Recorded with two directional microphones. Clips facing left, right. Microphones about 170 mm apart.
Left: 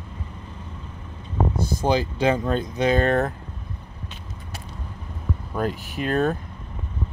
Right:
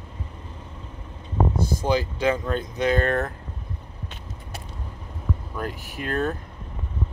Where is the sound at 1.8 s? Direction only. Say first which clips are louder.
Left 2 dB; 25° left (ahead or behind).